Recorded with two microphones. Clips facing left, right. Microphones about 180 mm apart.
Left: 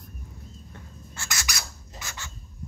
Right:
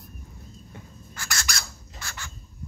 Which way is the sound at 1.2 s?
20° left (ahead or behind).